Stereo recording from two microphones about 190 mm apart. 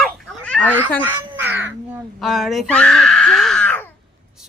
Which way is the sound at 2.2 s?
Centre (ahead or behind).